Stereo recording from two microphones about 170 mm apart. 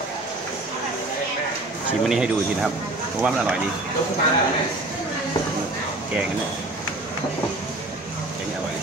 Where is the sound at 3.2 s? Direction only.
5° right (ahead or behind).